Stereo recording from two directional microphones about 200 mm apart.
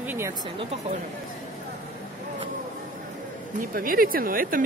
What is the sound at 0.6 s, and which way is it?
Speech, 30° right (ahead or behind).